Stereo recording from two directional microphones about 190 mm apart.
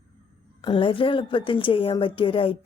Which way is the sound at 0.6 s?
25° left (ahead or behind).